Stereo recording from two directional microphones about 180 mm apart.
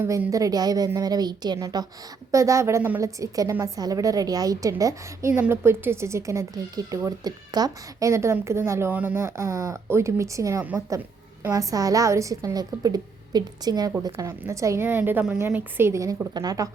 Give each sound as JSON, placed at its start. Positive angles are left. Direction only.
{"t": 0.0, "sound": "a woman's voice", "side_deg": -15}